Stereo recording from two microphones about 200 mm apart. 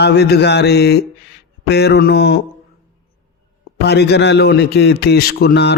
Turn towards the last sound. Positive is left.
turn(degrees=55)  # may be behind; listen again after turning